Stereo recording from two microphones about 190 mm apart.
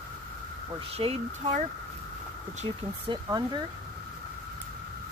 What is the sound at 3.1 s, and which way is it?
Speech, 25° right (ahead or behind).